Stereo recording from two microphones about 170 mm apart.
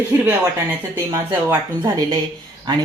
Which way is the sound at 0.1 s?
15° right (ahead or behind).